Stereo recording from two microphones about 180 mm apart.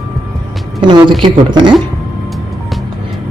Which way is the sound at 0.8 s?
25° right (ahead or behind).